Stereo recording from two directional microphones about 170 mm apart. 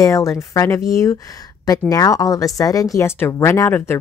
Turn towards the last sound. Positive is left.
turn(degrees=10)  # may be behind; listen again after turning